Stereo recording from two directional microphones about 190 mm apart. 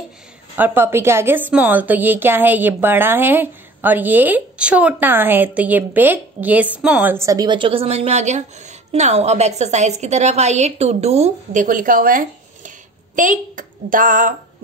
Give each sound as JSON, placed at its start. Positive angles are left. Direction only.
{"t": 0.6, "sound": "a woman's voice", "side_deg": -10}